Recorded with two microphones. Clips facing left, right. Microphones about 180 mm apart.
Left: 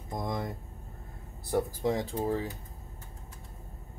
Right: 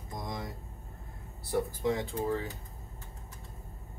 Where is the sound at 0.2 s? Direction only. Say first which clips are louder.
Left 5 dB; 55° left (ahead or behind).